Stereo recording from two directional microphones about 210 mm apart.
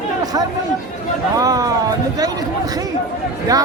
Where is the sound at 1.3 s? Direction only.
15° right (ahead or behind).